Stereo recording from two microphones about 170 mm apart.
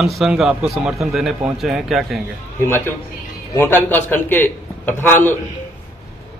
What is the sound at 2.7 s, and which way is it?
Speech, 15° left (ahead or behind).